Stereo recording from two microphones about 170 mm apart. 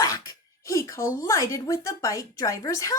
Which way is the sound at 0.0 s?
20° left (ahead or behind).